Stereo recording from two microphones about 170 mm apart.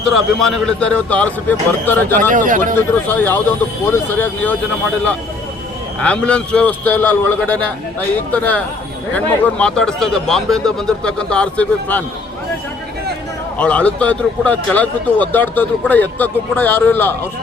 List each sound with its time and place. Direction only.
0.1 s speech: centre (ahead or behind)
2.3 s speech: 50° right (ahead or behind)
2.7 s speech: 10° left (ahead or behind)
6.0 s speech: 5° left (ahead or behind)
13.6 s speech: 5° left (ahead or behind)